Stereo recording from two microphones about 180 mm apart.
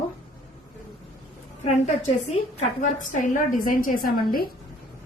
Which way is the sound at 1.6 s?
35° left (ahead or behind).